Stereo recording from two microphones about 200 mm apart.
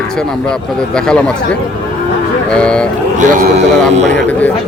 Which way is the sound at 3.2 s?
40° right (ahead or behind).